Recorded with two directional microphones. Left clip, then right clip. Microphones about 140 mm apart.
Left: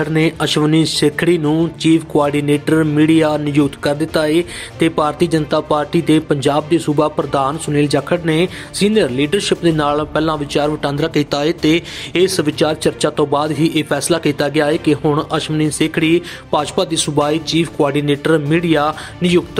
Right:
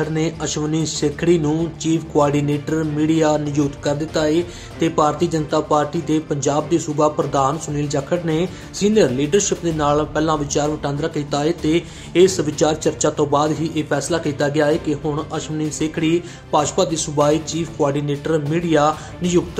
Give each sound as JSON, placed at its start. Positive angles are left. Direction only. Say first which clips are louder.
{"t": 0.0, "sound": "speech", "louder": "left 6 dB", "side_deg": 45}
{"t": 1.5, "sound": "speech", "louder": "left 6 dB", "side_deg": 35}
{"t": 2.7, "sound": "music", "louder": "left 8 dB", "side_deg": 60}
{"t": 3.1, "sound": "speech", "louder": "left 3 dB", "side_deg": 40}